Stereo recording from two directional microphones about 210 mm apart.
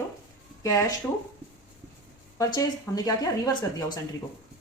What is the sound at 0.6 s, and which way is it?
Speech, 15° left (ahead or behind).